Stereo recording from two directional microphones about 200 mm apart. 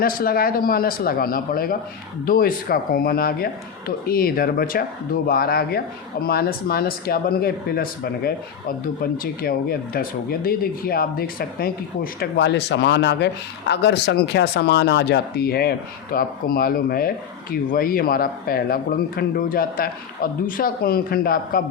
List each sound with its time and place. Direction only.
0.0 s speech: 45° left (ahead or behind)